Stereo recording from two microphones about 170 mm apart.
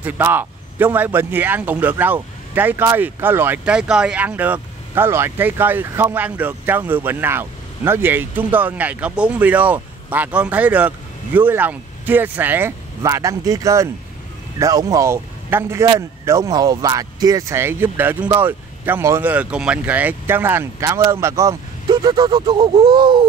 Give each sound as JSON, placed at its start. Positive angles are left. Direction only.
{"t": 0.0, "sound": "speech", "side_deg": -10}